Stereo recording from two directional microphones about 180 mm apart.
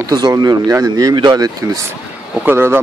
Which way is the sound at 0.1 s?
20° right (ahead or behind).